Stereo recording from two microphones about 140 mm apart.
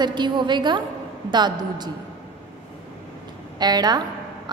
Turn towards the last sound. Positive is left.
turn(degrees=-30)  # may be behind; listen again after turning